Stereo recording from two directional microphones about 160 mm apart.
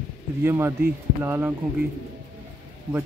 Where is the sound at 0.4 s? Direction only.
15° right (ahead or behind).